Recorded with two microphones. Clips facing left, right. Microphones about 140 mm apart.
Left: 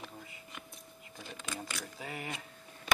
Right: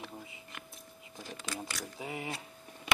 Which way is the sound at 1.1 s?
10° right (ahead or behind).